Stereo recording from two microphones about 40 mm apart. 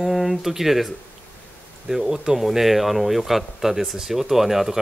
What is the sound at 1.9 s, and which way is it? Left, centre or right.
Speech, centre.